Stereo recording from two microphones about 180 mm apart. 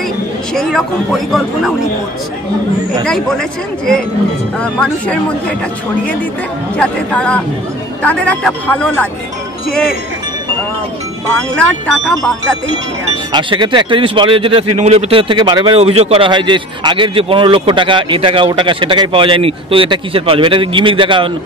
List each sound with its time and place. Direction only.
0.6 s speech: centre (ahead or behind)
3.1 s speech: 5° left (ahead or behind)
6.8 s speech: 5° left (ahead or behind)
11.2 s speech: 5° left (ahead or behind)
13.3 s speech: 25° right (ahead or behind)